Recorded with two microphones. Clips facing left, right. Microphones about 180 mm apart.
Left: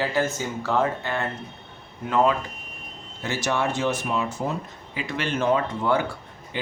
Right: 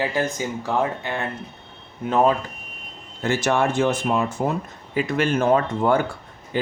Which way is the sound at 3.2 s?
55° right (ahead or behind).